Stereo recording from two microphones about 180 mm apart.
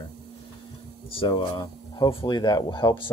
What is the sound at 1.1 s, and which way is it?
Speech, 25° left (ahead or behind).